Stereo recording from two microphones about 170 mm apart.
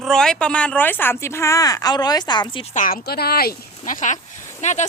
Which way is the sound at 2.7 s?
55° left (ahead or behind).